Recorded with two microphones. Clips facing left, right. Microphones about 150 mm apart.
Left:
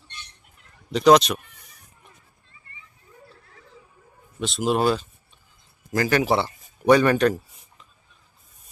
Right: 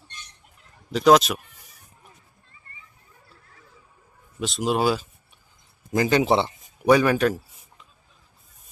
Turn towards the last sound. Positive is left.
turn(degrees=0)  # may be behind; listen again after turning